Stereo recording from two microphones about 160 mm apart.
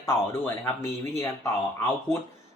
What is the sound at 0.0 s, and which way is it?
Speech, 15° left (ahead or behind).